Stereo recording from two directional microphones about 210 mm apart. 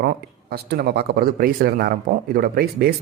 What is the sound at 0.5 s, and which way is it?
A man's voice, 50° right (ahead or behind).